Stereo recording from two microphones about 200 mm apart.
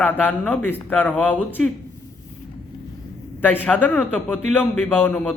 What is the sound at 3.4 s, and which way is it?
A man's voice, 10° left (ahead or behind).